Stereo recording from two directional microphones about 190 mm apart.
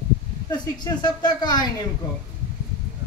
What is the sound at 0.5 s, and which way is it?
Speech, 20° left (ahead or behind).